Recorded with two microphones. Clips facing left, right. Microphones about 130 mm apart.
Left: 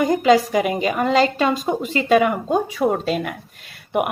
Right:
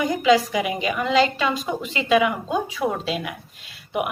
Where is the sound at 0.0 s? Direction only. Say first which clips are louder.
Left 3 dB; 40° left (ahead or behind).